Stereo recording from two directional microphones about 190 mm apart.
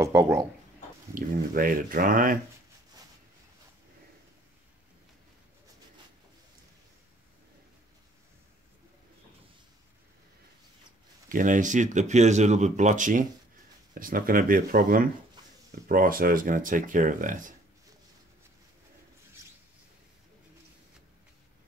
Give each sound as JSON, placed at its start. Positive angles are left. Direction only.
{"t": 0.0, "sound": "a sound", "side_deg": -15}
{"t": 1.1, "sound": "speech", "side_deg": -45}
{"t": 11.2, "sound": "speech", "side_deg": -45}